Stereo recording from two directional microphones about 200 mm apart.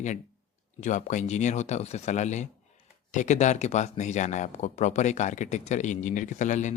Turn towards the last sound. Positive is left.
turn(degrees=35)  # may be behind; listen again after turning